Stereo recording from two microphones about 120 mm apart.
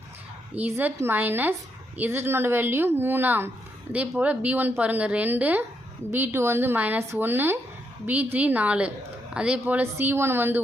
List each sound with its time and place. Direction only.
0.5 s speech: 15° right (ahead or behind)